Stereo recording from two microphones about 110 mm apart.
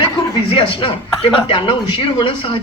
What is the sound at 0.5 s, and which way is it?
Speech, 50° left (ahead or behind).